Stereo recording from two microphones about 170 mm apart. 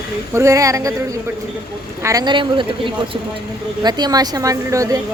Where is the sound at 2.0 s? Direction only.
25° right (ahead or behind).